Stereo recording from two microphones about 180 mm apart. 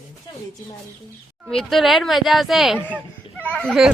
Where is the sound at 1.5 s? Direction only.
Centre (ahead or behind).